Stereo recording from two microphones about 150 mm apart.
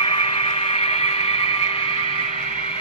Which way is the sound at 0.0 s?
40° left (ahead or behind).